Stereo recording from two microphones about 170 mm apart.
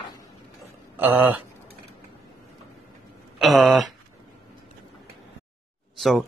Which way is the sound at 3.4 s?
Centre (ahead or behind).